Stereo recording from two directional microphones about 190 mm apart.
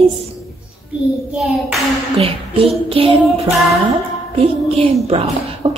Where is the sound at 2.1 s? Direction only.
30° right (ahead or behind).